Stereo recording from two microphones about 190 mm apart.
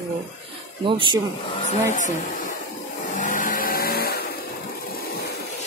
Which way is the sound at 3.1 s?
45° left (ahead or behind).